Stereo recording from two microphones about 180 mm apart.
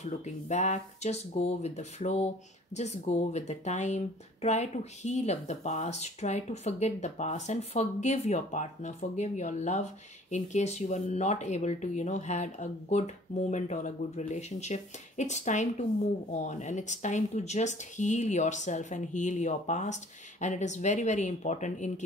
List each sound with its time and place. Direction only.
0.0 s speech: 40° left (ahead or behind)